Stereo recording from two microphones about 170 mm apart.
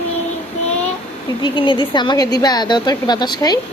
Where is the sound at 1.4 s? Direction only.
25° left (ahead or behind).